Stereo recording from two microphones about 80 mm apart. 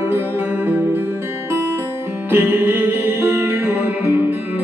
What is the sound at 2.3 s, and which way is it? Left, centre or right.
Music, right.